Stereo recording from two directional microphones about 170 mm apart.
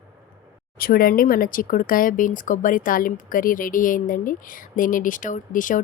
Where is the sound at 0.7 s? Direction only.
60° left (ahead or behind).